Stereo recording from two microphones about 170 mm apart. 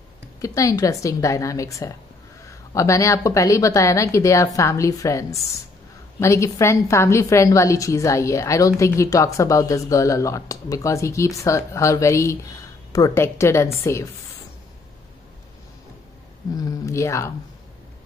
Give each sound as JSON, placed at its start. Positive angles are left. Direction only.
{"t": 0.4, "sound": "a woman's voice", "side_deg": 20}
{"t": 16.5, "sound": "a woman's voice", "side_deg": 20}